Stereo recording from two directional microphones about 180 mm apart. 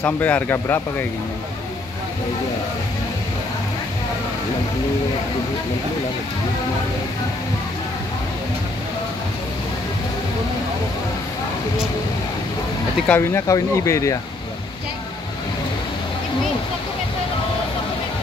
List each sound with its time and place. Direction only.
0.0 s speech: 10° left (ahead or behind)
13.0 s speech: 10° left (ahead or behind)